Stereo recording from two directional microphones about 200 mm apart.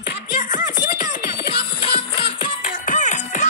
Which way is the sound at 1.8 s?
25° left (ahead or behind).